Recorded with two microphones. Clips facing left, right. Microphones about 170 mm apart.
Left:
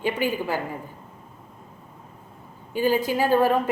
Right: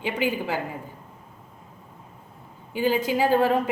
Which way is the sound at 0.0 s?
15° right (ahead or behind).